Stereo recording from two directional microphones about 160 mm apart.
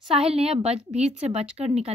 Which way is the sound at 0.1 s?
40° right (ahead or behind).